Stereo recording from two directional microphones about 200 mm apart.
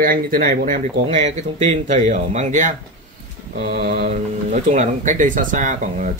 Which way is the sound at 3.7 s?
50° right (ahead or behind).